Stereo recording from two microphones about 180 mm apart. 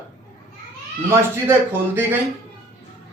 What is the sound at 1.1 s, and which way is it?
Speech, 10° right (ahead or behind).